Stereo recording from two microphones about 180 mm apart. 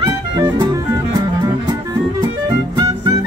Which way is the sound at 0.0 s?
25° right (ahead or behind).